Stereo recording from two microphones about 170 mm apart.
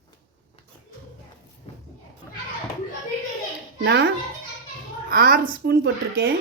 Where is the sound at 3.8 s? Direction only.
90° right.